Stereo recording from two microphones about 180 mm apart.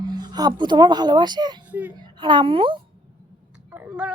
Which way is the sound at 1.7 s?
10° right (ahead or behind).